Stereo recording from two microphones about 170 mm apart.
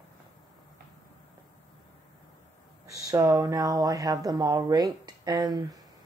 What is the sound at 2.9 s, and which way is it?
Speech, 20° right (ahead or behind).